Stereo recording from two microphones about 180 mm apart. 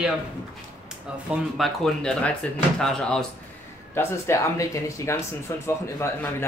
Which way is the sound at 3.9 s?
15° left (ahead or behind).